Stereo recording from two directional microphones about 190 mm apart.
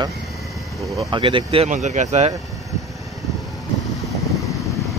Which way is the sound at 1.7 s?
40° right (ahead or behind).